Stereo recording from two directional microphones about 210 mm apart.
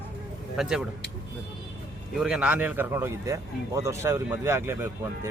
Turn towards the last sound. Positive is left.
turn(degrees=-10)  # may be behind; listen again after turning